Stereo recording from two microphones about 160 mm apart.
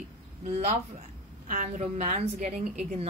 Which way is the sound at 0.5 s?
45° right (ahead or behind).